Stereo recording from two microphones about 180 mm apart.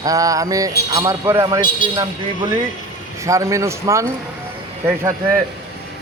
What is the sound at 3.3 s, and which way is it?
Speech, 15° right (ahead or behind).